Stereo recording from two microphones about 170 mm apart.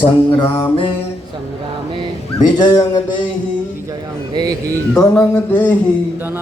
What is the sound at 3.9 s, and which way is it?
Speech, 25° right (ahead or behind).